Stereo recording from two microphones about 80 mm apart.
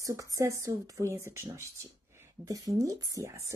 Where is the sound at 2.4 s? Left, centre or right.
Right.